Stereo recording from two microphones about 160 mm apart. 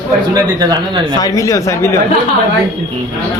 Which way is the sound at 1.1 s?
25° left (ahead or behind).